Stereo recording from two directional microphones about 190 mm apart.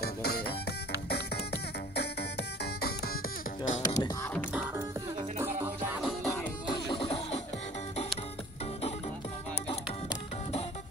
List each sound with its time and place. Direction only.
0.0 s music: 55° left (ahead or behind)
3.6 s music: 40° left (ahead or behind)
5.9 s music: centre (ahead or behind)
6.3 s music: 25° left (ahead or behind)